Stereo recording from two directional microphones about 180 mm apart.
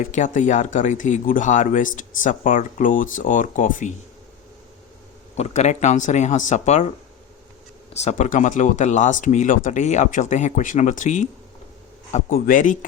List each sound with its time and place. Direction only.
0.1 s speech: 45° left (ahead or behind)
5.4 s speech: 40° left (ahead or behind)
7.9 s speech: 40° left (ahead or behind)